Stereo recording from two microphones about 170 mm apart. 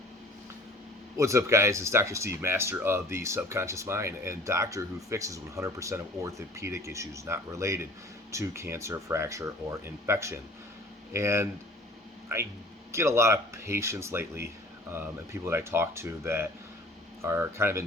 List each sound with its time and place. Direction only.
1.1 s speech: 15° right (ahead or behind)